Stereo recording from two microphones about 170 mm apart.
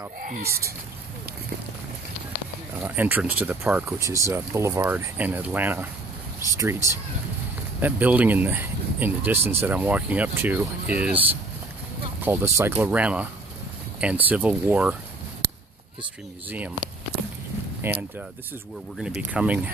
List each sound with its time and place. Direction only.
0.2 s speech: 55° right (ahead or behind)
2.8 s speech: 10° right (ahead or behind)
12.2 s speech: 15° right (ahead or behind)
16.4 s speech: 10° right (ahead or behind)
17.8 s speech: 15° right (ahead or behind)